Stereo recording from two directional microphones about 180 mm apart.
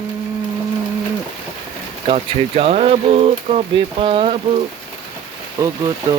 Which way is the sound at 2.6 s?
35° right (ahead or behind).